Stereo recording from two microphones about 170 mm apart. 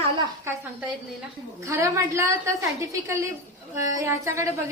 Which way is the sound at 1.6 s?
15° right (ahead or behind).